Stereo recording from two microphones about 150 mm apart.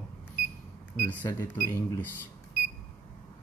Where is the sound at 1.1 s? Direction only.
15° left (ahead or behind).